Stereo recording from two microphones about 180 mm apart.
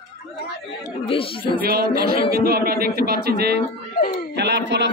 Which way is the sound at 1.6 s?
55° right (ahead or behind).